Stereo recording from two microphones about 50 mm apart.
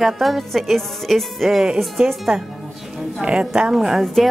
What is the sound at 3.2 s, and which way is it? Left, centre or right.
Speech, centre.